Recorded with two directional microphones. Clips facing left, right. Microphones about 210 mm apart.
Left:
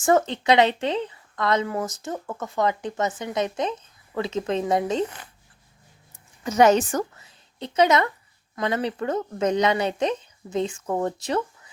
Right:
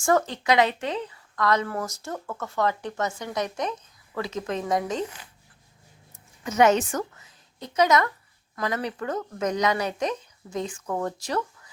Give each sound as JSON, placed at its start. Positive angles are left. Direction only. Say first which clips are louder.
{"t": 0.0, "sound": "speech", "louder": "left 3 dB", "side_deg": 20}
{"t": 5.0, "sound": "speech", "louder": "left 3 dB", "side_deg": 55}
{"t": 6.4, "sound": "a woman's voice", "louder": "left 2 dB", "side_deg": 35}